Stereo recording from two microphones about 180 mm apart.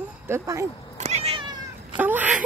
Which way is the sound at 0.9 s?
35° right (ahead or behind).